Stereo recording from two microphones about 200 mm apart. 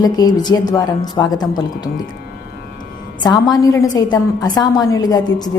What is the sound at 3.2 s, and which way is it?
A woman's voice, 20° left (ahead or behind).